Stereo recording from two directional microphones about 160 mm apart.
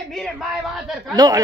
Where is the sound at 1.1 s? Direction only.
25° right (ahead or behind).